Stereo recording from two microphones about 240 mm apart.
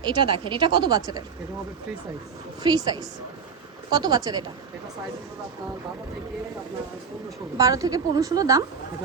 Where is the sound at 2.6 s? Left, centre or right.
Centre.